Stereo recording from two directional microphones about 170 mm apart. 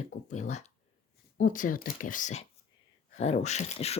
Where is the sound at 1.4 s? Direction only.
50° left (ahead or behind).